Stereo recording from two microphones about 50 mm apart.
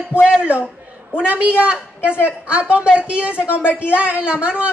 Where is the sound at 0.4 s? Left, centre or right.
Right.